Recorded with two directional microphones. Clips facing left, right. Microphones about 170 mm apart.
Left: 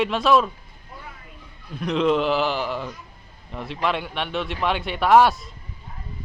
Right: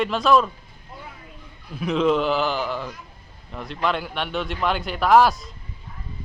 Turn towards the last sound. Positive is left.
turn(degrees=0)  # may be behind; listen again after turning